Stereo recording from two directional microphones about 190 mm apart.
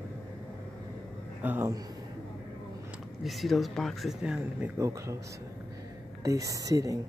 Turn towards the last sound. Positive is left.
turn(degrees=-20)  # may be behind; listen again after turning